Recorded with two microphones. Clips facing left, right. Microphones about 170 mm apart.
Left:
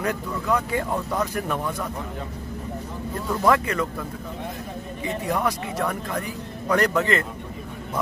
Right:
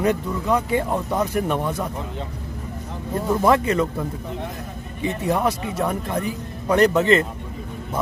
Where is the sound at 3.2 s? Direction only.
25° right (ahead or behind).